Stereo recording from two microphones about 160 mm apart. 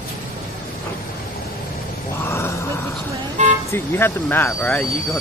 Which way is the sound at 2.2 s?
15° left (ahead or behind).